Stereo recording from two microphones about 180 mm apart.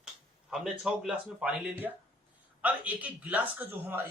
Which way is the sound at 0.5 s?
Centre (ahead or behind).